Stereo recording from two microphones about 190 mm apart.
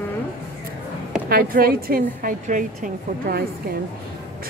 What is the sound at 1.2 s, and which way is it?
Speech, 50° right (ahead or behind).